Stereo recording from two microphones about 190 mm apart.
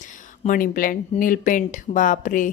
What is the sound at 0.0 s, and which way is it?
A woman's voice, 45° left (ahead or behind).